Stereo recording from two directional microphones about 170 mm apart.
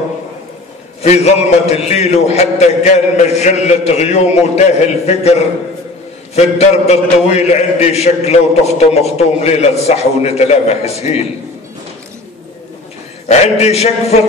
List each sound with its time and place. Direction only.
1.0 s a man's voice: 40° left (ahead or behind)
6.3 s a man's voice: 40° left (ahead or behind)
13.3 s a man's voice: 40° left (ahead or behind)